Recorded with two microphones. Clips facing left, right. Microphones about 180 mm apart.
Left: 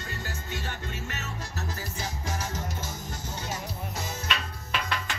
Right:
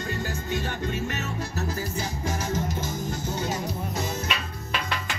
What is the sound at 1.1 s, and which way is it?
Music, 15° right (ahead or behind).